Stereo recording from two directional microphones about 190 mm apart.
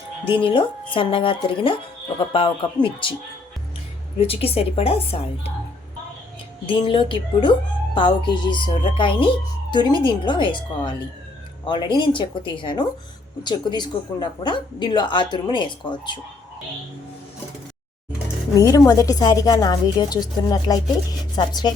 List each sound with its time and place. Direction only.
0.3 s speech: 25° left (ahead or behind)
4.2 s a woman's voice: 30° left (ahead or behind)
6.7 s speech: 25° left (ahead or behind)
18.5 s speech: 20° left (ahead or behind)